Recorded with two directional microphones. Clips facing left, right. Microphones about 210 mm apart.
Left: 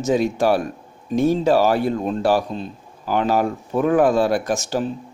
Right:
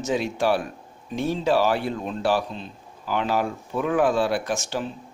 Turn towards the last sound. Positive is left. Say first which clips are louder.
# left 5 dB
turn(degrees=40)  # may be behind; listen again after turning